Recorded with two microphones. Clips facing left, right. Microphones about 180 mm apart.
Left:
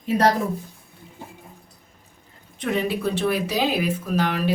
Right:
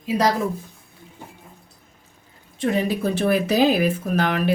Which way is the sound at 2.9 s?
45° right (ahead or behind).